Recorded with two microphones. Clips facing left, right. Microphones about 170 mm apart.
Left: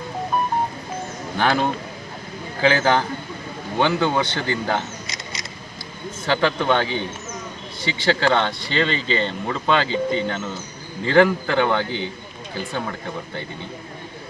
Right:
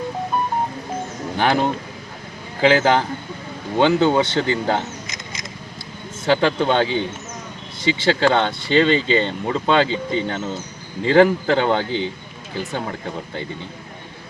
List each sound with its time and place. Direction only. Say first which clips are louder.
1.4 s speech: right 2 dB; 15° right (ahead or behind)
6.2 s speech: right 3 dB; 20° right (ahead or behind)